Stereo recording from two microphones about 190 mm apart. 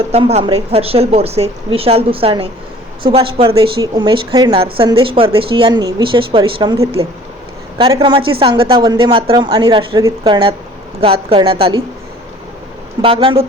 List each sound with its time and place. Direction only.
0.1 s a woman's voice: 35° right (ahead or behind)
13.0 s a woman's voice: 30° right (ahead or behind)